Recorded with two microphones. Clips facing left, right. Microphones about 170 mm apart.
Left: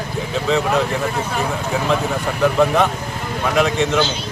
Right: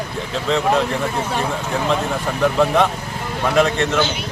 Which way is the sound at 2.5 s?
Centre (ahead or behind).